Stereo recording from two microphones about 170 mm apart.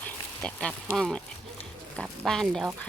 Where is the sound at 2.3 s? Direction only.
5° left (ahead or behind).